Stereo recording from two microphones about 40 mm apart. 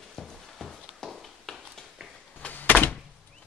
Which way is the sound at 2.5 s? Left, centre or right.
Left.